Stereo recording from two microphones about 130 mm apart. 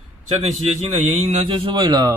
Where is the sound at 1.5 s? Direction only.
40° right (ahead or behind).